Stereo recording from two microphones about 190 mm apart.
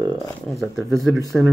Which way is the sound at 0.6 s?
Centre (ahead or behind).